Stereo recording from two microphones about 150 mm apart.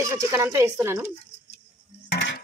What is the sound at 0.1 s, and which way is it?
Speech, 20° right (ahead or behind).